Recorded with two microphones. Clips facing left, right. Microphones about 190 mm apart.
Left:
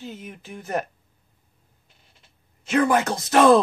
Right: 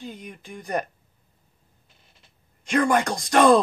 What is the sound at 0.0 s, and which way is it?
Speech, 5° left (ahead or behind).